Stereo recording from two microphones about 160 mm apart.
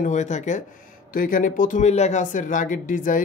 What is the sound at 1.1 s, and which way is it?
Speech, 60° left (ahead or behind).